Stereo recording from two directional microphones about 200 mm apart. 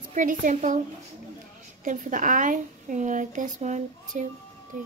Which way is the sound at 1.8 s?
40° right (ahead or behind).